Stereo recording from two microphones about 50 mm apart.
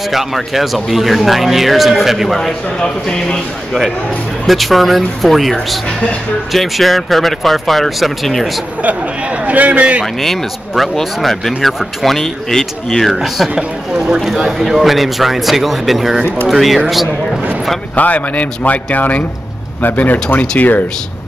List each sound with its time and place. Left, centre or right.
0.1 s speech: centre
2.8 s speech: centre
4.5 s speech: centre
8.8 s a man's voice: right
10.2 s speech: centre
13.6 s speech: centre
17.9 s speech: left